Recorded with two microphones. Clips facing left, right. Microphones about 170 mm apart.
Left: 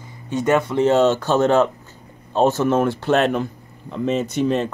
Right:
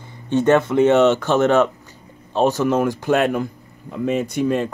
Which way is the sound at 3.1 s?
10° right (ahead or behind).